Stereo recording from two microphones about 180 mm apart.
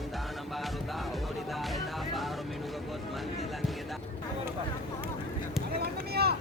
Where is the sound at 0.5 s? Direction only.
Centre (ahead or behind).